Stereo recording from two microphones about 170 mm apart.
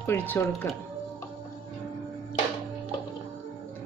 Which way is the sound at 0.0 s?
10° left (ahead or behind).